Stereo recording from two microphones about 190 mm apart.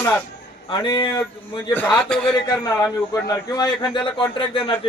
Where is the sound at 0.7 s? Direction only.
25° left (ahead or behind).